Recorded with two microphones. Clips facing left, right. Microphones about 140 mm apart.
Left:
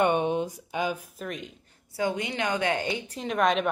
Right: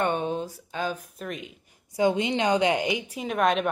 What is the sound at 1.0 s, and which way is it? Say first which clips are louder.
Speech: even; centre (ahead or behind).